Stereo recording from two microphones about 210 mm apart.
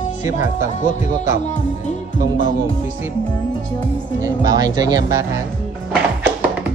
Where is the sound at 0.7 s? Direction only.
35° left (ahead or behind).